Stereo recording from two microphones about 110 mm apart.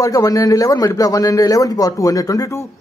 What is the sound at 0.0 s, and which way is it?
A man's voice, 30° left (ahead or behind).